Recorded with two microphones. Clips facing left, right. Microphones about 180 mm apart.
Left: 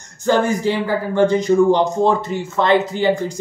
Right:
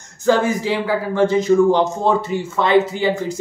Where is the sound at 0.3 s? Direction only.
Centre (ahead or behind).